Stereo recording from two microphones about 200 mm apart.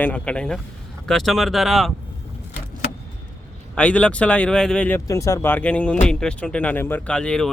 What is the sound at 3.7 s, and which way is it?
Speech, 5° left (ahead or behind).